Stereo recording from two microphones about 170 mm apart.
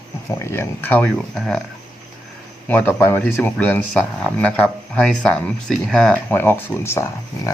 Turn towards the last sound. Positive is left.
turn(degrees=15)  # may be behind; listen again after turning